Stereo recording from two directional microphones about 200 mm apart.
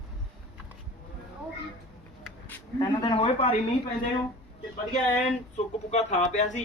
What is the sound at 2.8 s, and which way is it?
Speech, 20° left (ahead or behind).